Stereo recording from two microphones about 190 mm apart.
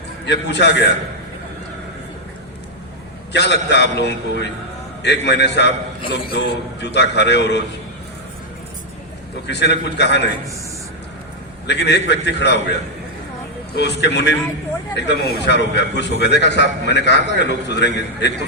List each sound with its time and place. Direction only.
0.3 s a man's voice: 65° left (ahead or behind)
3.3 s a man's voice: 65° left (ahead or behind)
9.5 s a man's voice: 65° left (ahead or behind)
11.6 s a man's voice: 65° left (ahead or behind)
13.7 s a man's voice: 65° left (ahead or behind)